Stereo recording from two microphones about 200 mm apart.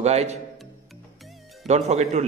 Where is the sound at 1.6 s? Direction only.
35° right (ahead or behind).